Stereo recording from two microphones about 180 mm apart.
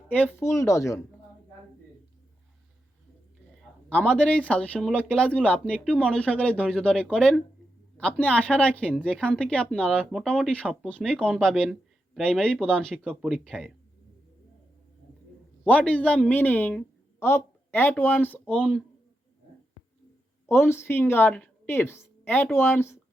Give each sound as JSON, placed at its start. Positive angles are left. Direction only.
{"t": 0.1, "sound": "speech", "side_deg": 10}
{"t": 3.8, "sound": "speech", "side_deg": 5}
{"t": 15.6, "sound": "speech", "side_deg": 5}
{"t": 20.5, "sound": "speech", "side_deg": 15}